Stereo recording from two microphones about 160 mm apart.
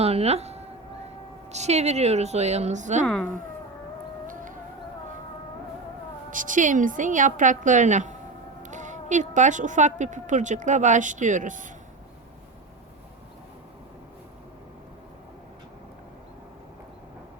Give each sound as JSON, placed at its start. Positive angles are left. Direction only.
{"t": 0.0, "sound": "a sound", "side_deg": -40}
{"t": 1.5, "sound": "speech", "side_deg": -45}
{"t": 3.1, "sound": "speech", "side_deg": 5}
{"t": 4.3, "sound": "music", "side_deg": -55}
{"t": 6.3, "sound": "speech", "side_deg": -55}